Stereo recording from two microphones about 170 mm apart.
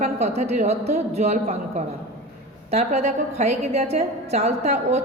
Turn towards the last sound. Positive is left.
turn(degrees=-40)  # may be behind; listen again after turning